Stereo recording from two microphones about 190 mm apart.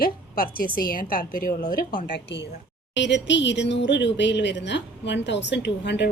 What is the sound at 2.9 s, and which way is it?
Speech, 70° left (ahead or behind).